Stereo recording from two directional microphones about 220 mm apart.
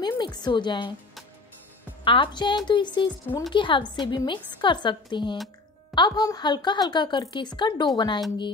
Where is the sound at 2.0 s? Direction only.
20° left (ahead or behind).